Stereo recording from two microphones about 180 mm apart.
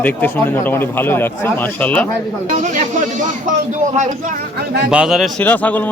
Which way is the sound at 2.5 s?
45° right (ahead or behind).